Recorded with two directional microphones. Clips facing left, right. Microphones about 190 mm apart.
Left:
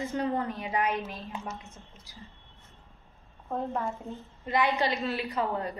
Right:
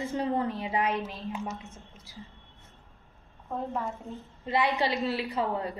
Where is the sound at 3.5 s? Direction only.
Centre (ahead or behind).